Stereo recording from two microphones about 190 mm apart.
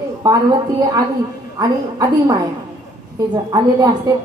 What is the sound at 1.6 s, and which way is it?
Speech, 20° right (ahead or behind).